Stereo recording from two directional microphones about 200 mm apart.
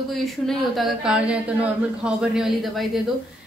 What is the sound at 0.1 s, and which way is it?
Speech, centre (ahead or behind).